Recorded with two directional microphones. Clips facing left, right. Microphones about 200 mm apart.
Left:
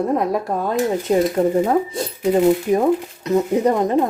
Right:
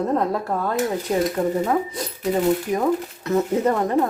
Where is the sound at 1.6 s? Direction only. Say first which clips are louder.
Left 4 dB; 30° left (ahead or behind).